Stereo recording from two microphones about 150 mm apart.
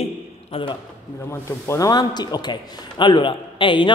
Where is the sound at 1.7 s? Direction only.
25° left (ahead or behind).